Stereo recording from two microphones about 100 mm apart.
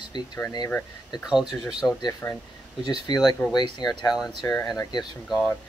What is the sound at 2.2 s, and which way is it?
Speech, 20° left (ahead or behind).